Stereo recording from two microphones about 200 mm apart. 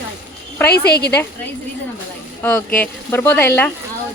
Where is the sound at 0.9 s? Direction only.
55° left (ahead or behind).